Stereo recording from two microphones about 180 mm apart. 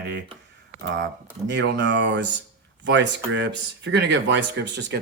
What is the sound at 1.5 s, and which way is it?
A man's voice, 85° right.